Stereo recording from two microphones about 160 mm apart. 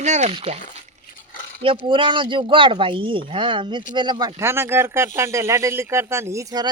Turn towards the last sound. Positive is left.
turn(degrees=-25)  # may be behind; listen again after turning